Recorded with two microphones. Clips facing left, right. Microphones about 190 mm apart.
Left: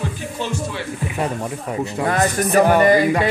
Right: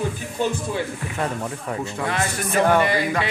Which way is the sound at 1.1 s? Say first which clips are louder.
Left 2 dB; 15° left (ahead or behind).